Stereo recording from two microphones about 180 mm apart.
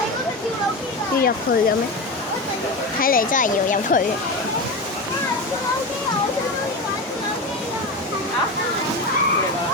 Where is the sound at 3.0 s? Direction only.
50° left (ahead or behind).